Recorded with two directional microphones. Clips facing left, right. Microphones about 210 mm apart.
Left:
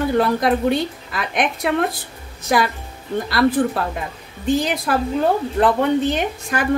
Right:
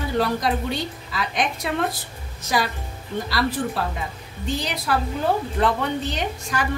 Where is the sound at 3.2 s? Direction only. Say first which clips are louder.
Left 8 dB; 55° left (ahead or behind).